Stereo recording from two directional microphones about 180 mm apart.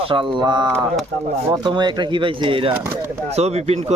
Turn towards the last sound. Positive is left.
turn(degrees=-35)  # may be behind; listen again after turning